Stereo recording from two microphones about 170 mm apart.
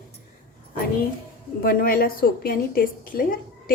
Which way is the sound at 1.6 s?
60° left (ahead or behind).